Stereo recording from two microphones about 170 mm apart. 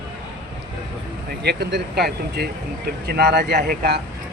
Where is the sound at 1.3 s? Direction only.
75° right (ahead or behind).